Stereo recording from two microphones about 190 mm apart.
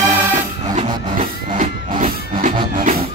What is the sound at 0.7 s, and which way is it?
Music, 40° right (ahead or behind).